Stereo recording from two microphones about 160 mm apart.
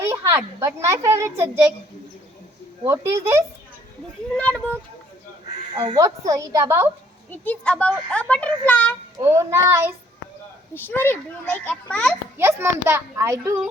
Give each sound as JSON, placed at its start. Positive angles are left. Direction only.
{"t": 0.0, "sound": "a child's voice", "side_deg": -15}
{"t": 2.8, "sound": "a child's voice", "side_deg": -15}
{"t": 4.4, "sound": "a child's voice", "side_deg": 10}
{"t": 5.8, "sound": "a woman's voice", "side_deg": -20}
{"t": 7.3, "sound": "a child's voice", "side_deg": 10}
{"t": 9.1, "sound": "a child's voice", "side_deg": -15}
{"t": 10.8, "sound": "a child's voice", "side_deg": 15}
{"t": 12.4, "sound": "a child's voice", "side_deg": -15}